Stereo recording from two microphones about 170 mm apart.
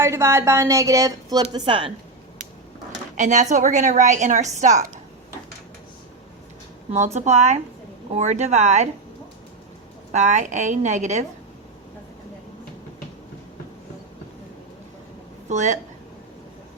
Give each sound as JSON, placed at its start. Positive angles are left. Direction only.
{"t": 0.0, "sound": "a woman's voice", "side_deg": -15}
{"t": 3.2, "sound": "a woman's voice", "side_deg": -45}
{"t": 6.9, "sound": "a woman's voice", "side_deg": -45}
{"t": 10.1, "sound": "a woman's voice", "side_deg": -45}
{"t": 15.4, "sound": "a woman's voice", "side_deg": -45}